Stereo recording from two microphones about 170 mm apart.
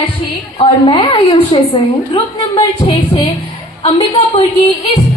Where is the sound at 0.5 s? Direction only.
30° left (ahead or behind).